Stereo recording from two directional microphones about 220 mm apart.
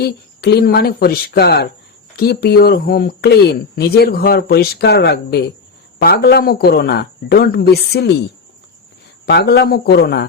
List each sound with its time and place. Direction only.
0.0 s speech: 45° left (ahead or behind)
9.2 s speech: 50° left (ahead or behind)